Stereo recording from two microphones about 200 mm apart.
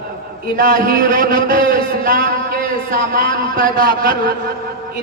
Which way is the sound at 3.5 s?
45° right (ahead or behind).